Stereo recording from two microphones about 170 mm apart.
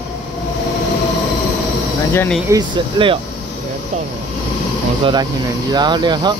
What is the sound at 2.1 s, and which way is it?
Speech, 15° left (ahead or behind).